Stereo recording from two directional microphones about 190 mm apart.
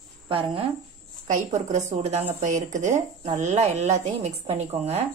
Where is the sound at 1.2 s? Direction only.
40° right (ahead or behind).